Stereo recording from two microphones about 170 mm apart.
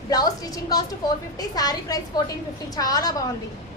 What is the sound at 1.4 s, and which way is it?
A woman's voice, 20° left (ahead or behind).